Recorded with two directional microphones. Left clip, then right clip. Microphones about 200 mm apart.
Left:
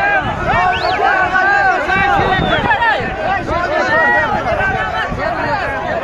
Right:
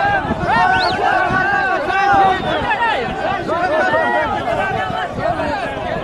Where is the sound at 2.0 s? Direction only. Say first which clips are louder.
Even; 45° left (ahead or behind).